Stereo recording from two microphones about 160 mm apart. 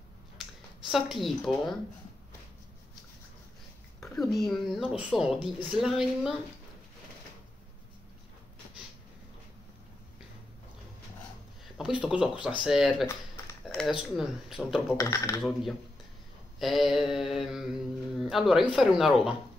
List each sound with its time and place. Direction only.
0.8 s speech: centre (ahead or behind)
4.0 s speech: centre (ahead or behind)
11.6 s a sound: 5° right (ahead or behind)
12.4 s speech: 5° right (ahead or behind)
13.7 s a sound: 5° left (ahead or behind)
14.1 s speech: centre (ahead or behind)
15.0 s speech: 20° left (ahead or behind)
16.5 s speech: centre (ahead or behind)